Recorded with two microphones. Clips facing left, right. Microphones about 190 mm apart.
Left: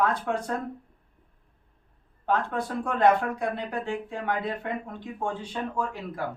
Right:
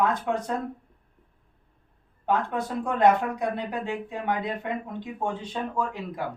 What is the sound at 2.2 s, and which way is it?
Speech, 20° right (ahead or behind).